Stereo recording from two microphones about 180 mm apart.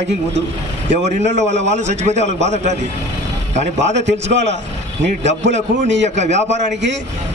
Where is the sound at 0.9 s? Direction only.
40° right (ahead or behind).